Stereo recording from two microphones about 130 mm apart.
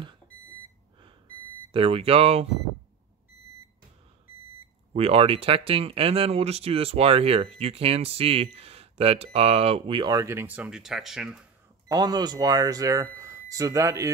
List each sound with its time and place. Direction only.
1.7 s speech: 45° right (ahead or behind)
4.9 s speech: 50° right (ahead or behind)
10.2 s speech: 15° right (ahead or behind)
11.9 s speech: 30° right (ahead or behind)